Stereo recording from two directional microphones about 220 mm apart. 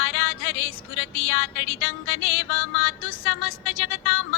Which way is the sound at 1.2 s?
65° left (ahead or behind).